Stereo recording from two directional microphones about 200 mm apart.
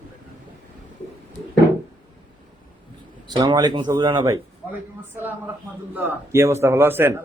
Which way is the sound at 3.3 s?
20° right (ahead or behind).